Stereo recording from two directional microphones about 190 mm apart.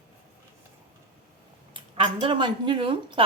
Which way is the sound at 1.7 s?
25° right (ahead or behind).